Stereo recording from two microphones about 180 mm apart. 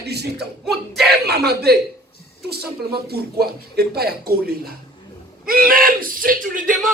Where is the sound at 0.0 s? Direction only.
65° right (ahead or behind).